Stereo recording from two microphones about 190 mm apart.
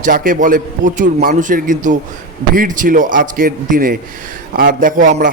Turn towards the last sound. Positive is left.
turn(degrees=-45)  # may be behind; listen again after turning